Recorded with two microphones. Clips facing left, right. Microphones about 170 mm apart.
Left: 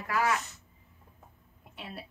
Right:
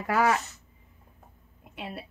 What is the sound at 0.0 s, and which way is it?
Speech, 65° right (ahead or behind).